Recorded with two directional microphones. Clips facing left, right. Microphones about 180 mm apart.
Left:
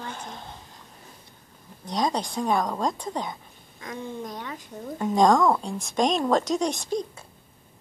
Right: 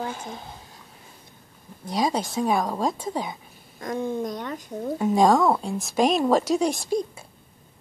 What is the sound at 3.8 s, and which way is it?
Speech, 45° right (ahead or behind).